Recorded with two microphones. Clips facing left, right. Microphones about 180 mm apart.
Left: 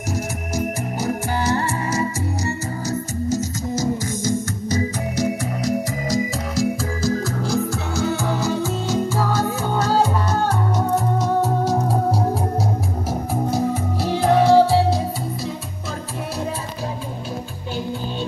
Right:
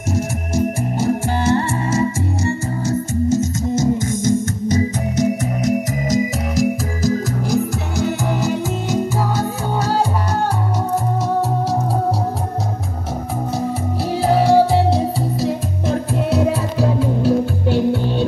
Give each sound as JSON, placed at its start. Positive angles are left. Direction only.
{"t": 0.1, "sound": "music", "side_deg": -25}
{"t": 4.2, "sound": "organ", "side_deg": -25}
{"t": 14.2, "sound": "music", "side_deg": -10}
{"t": 16.3, "sound": "music", "side_deg": -65}